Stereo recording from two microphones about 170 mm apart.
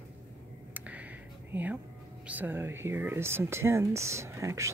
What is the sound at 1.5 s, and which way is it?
Speech, 10° right (ahead or behind).